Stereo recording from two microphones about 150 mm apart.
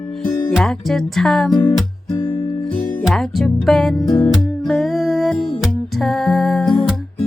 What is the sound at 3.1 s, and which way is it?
Speech, centre (ahead or behind).